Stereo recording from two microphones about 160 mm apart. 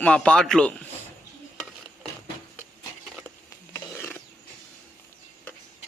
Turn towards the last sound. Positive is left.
turn(degrees=15)  # may be behind; listen again after turning